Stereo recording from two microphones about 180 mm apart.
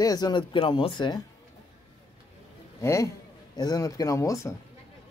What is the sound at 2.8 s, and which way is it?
A man's voice, 15° left (ahead or behind).